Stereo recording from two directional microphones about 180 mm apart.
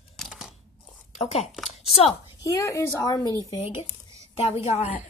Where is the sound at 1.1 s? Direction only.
40° left (ahead or behind).